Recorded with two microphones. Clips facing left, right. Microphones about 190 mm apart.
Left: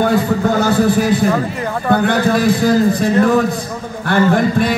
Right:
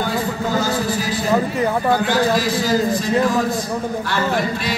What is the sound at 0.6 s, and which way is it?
Speech, 60° left (ahead or behind).